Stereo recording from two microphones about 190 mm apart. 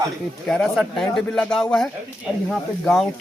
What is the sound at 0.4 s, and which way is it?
Speech, centre (ahead or behind).